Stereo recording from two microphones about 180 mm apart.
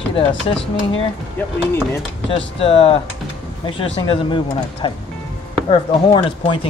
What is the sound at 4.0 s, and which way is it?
Speech, 25° left (ahead or behind).